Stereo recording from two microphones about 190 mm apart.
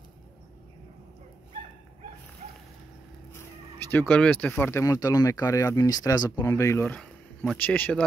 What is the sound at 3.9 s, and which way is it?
Speech, 10° left (ahead or behind).